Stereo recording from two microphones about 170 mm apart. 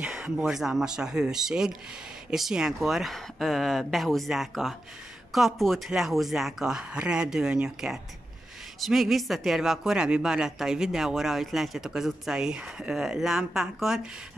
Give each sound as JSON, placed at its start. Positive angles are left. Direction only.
{"t": 0.0, "sound": "speech", "side_deg": -5}